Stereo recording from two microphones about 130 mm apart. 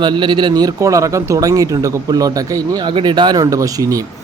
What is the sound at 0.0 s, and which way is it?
Speech, 35° right (ahead or behind).